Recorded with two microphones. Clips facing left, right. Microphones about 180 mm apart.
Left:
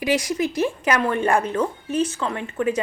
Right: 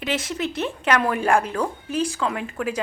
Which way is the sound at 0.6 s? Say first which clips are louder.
Right 1 dB; 10° left (ahead or behind).